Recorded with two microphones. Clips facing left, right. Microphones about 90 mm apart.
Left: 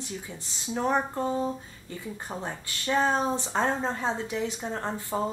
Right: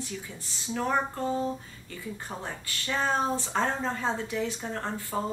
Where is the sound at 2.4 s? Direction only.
25° left (ahead or behind).